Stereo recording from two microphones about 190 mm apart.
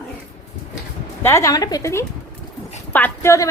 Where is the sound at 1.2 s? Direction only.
15° left (ahead or behind).